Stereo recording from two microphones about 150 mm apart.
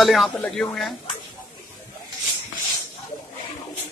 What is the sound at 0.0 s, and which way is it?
Speech, centre (ahead or behind).